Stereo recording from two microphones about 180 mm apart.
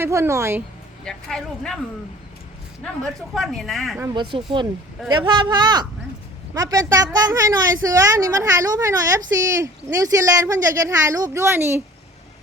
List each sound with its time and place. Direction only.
0.0 s a woman's voice: 15° right (ahead or behind)
1.0 s speech: 5° left (ahead or behind)
2.8 s speech: centre (ahead or behind)
4.1 s a woman's voice: 25° right (ahead or behind)